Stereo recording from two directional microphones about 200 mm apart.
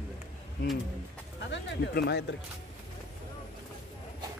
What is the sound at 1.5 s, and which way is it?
Speech, 60° left (ahead or behind).